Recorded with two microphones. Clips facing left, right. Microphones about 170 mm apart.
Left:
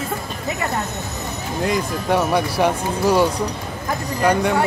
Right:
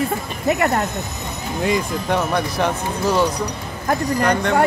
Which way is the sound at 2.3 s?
10° left (ahead or behind).